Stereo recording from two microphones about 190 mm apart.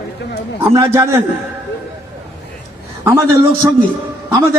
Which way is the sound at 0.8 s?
15° right (ahead or behind).